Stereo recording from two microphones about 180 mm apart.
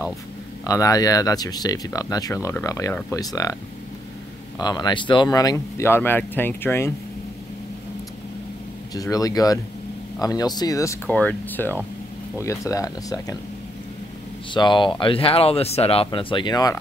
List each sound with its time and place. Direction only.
0.7 s speech: 20° left (ahead or behind)
4.6 s speech: 25° left (ahead or behind)
8.9 s speech: 20° left (ahead or behind)
14.5 s speech: 25° left (ahead or behind)